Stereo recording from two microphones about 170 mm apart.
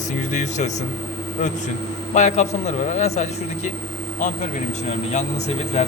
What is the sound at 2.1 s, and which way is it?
A man's voice, 45° left (ahead or behind).